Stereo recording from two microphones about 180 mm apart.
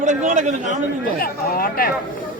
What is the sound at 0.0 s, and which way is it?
Speech, 40° right (ahead or behind).